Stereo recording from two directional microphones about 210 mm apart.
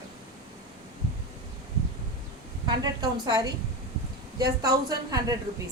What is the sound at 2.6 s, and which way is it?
A woman's voice, 20° right (ahead or behind).